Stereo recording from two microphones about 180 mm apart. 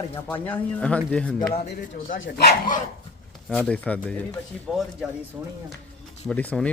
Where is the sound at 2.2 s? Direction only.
70° left (ahead or behind).